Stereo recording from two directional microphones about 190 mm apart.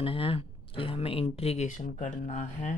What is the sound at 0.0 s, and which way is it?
Speech, 25° left (ahead or behind).